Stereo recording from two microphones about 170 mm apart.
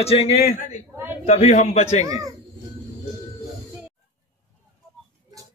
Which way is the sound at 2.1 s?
20° right (ahead or behind).